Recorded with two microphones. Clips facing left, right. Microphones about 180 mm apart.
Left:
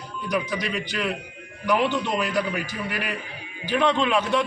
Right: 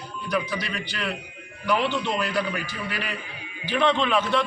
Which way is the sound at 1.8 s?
45° left (ahead or behind).